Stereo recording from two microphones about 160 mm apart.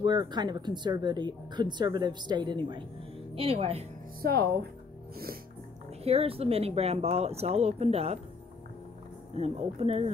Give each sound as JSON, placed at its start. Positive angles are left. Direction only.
{"t": 0.0, "sound": "speech", "side_deg": -30}
{"t": 4.2, "sound": "speech", "side_deg": -75}
{"t": 6.0, "sound": "speech", "side_deg": -35}
{"t": 9.3, "sound": "speech", "side_deg": -40}